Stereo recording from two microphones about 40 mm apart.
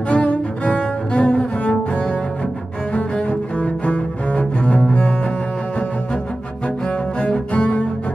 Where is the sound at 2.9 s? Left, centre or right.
Left.